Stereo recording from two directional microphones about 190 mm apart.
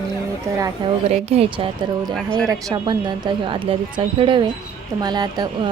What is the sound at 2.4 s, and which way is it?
Speech, 20° right (ahead or behind).